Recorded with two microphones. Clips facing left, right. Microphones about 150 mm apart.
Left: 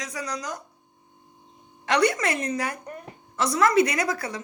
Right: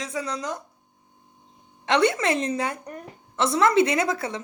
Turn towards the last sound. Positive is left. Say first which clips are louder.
# right 3 dB
turn(degrees=-25)  # may be behind; listen again after turning